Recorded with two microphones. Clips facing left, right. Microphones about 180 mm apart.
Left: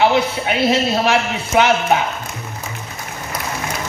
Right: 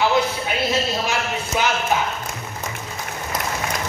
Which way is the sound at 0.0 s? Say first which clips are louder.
Left 4 dB; 65° left (ahead or behind).